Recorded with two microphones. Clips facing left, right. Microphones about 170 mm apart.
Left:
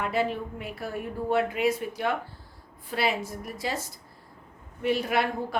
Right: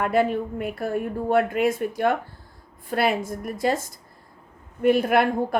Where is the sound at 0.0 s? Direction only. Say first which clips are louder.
Right 6 dB; 50° right (ahead or behind).